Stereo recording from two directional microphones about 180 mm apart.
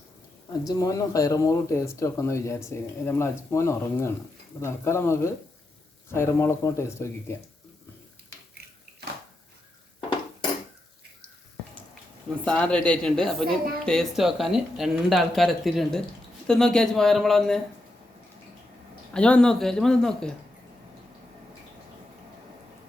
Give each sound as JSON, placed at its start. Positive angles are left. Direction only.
{"t": 0.6, "sound": "speech", "side_deg": 20}
{"t": 12.5, "sound": "speech", "side_deg": 5}
{"t": 19.1, "sound": "speech", "side_deg": 5}